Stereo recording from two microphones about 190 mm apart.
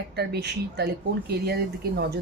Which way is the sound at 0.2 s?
60° right (ahead or behind).